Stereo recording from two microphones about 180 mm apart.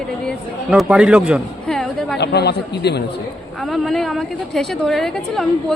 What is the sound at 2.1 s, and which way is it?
Speech, 65° left (ahead or behind).